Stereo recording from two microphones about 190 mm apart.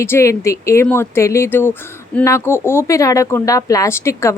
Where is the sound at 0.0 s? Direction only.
15° left (ahead or behind).